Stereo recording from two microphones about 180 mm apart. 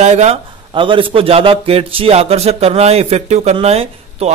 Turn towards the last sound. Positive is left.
turn(degrees=-35)  # may be behind; listen again after turning